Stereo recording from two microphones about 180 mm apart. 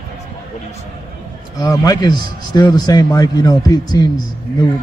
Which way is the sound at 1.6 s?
20° left (ahead or behind).